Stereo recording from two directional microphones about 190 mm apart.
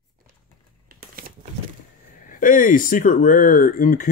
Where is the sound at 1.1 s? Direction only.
50° right (ahead or behind).